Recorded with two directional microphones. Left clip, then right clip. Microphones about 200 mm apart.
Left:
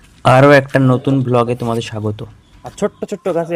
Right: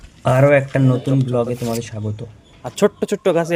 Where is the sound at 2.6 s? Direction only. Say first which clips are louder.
Right 3 dB; 30° right (ahead or behind).